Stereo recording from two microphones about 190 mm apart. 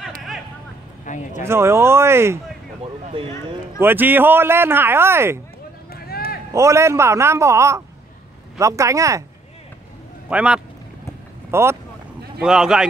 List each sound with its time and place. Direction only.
1.0 s speech: 40° left (ahead or behind)
1.4 s speech: 15° right (ahead or behind)
2.8 s a sound: 30° right (ahead or behind)
3.8 s speech: 10° right (ahead or behind)
5.9 s a sound: 55° left (ahead or behind)
6.5 s speech: 15° right (ahead or behind)
10.3 s speech: 5° right (ahead or behind)